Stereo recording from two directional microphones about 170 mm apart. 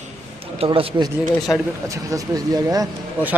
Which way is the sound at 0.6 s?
35° right (ahead or behind).